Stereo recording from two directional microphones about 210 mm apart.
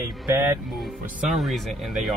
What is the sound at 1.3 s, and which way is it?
Speech, centre (ahead or behind).